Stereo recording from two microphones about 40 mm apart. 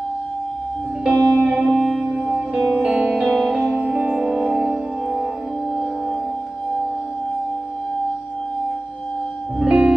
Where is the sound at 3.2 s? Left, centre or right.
Centre.